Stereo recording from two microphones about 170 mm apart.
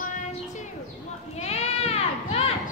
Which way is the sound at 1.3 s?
40° left (ahead or behind).